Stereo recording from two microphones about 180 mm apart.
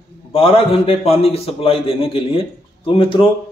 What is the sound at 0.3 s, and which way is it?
A man's voice, 30° left (ahead or behind).